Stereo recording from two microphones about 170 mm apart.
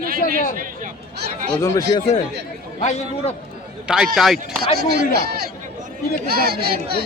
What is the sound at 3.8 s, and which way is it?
Speech, 5° right (ahead or behind).